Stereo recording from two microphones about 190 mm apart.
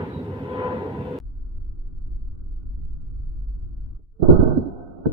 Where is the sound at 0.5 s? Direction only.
20° right (ahead or behind).